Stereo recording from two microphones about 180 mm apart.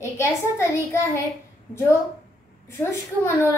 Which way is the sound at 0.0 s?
15° left (ahead or behind).